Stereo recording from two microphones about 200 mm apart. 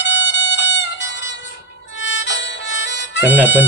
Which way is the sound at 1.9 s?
65° left (ahead or behind).